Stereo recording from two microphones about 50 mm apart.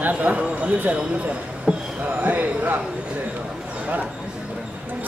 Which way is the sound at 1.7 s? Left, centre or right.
Right.